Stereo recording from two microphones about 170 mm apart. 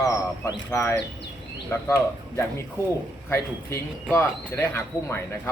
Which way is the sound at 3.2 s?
15° left (ahead or behind).